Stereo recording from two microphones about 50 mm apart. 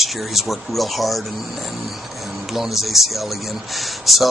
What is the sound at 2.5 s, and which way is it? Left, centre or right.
Speech, centre.